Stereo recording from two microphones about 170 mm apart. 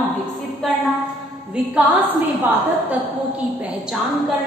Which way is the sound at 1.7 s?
10° right (ahead or behind).